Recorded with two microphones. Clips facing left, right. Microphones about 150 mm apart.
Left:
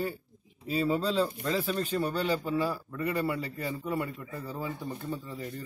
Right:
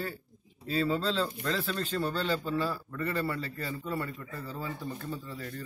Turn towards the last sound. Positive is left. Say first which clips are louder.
# left 2 dB
turn(degrees=15)  # may be behind; listen again after turning